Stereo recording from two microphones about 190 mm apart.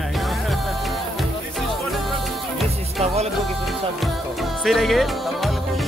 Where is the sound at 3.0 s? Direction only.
35° right (ahead or behind).